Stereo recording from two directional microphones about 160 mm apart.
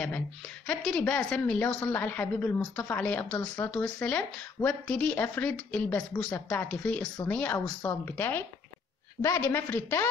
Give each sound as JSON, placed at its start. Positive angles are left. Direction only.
{"t": 0.7, "sound": "a woman's voice", "side_deg": 5}